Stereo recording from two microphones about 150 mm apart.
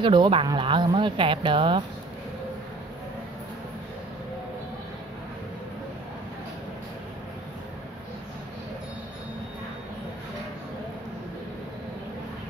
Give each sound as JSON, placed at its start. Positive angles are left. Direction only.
{"t": 0.0, "sound": "speech", "side_deg": -30}